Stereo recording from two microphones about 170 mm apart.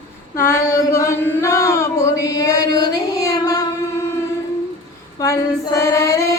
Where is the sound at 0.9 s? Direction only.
20° left (ahead or behind).